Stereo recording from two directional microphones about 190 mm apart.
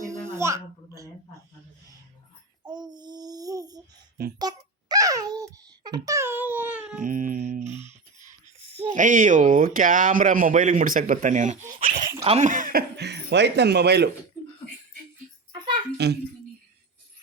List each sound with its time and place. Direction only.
0.0 s babbling: 15° right (ahead or behind)
2.6 s child singing: 20° right (ahead or behind)
4.4 s a sound: 20° right (ahead or behind)
7.0 s music: 45° right (ahead or behind)
8.2 s a sound: 35° right (ahead or behind)
9.0 s speech: 45° right (ahead or behind)
11.9 s dog: 20° right (ahead or behind)
12.2 s speech: 35° right (ahead or behind); by 14.1 s 60° right (ahead or behind)
16.0 s a child's voice: 60° right (ahead or behind)